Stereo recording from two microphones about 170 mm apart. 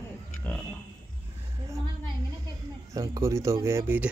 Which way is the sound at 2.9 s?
20° right (ahead or behind).